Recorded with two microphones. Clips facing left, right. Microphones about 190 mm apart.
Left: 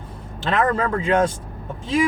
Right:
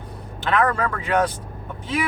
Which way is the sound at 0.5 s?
25° left (ahead or behind).